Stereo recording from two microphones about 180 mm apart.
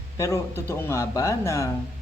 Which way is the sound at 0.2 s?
15° left (ahead or behind).